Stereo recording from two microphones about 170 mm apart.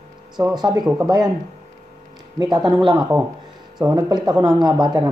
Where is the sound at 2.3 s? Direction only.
25° right (ahead or behind).